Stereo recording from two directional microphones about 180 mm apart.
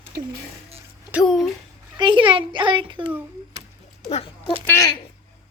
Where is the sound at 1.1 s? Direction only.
Centre (ahead or behind).